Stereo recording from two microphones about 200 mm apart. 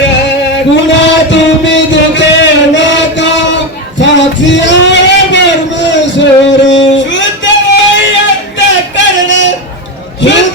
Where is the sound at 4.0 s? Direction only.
65° left (ahead or behind).